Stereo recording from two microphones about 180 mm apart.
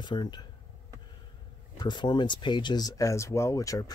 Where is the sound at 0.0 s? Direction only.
25° left (ahead or behind).